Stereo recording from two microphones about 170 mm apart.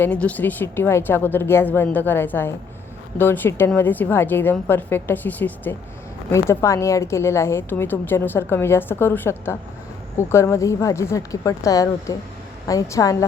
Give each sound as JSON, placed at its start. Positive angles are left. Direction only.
{"t": 0.0, "sound": "a woman's voice", "side_deg": 10}